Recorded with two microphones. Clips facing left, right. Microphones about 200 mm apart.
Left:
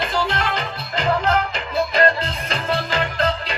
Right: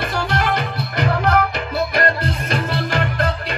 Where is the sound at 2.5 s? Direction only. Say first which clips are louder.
Even; 50° right (ahead or behind).